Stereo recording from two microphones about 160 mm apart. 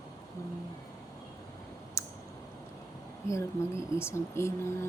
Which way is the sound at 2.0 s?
20° left (ahead or behind).